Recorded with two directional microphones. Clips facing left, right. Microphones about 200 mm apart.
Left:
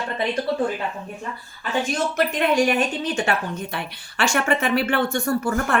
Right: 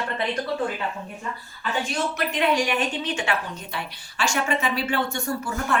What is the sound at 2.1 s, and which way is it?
A woman's voice, 45° left (ahead or behind).